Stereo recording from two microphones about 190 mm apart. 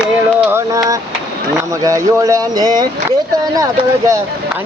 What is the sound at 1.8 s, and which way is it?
Speech, 15° right (ahead or behind).